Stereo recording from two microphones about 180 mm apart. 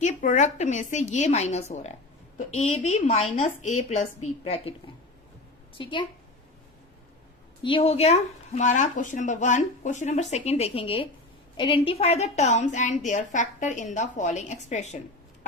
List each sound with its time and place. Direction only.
0.0 s speech: 45° left (ahead or behind)
5.7 s a woman's voice: 25° left (ahead or behind)
7.6 s a woman's voice: 30° left (ahead or behind)